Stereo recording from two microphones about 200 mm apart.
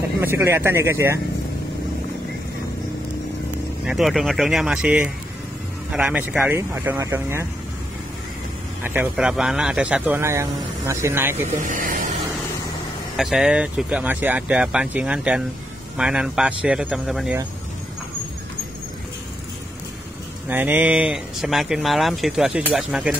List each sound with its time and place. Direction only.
0.2 s speech: 10° right (ahead or behind)
3.8 s speech: centre (ahead or behind)
8.8 s speech: 10° right (ahead or behind)
11.5 s speech: 40° right (ahead or behind)
13.1 s speech: centre (ahead or behind)
20.4 s speech: 10° right (ahead or behind)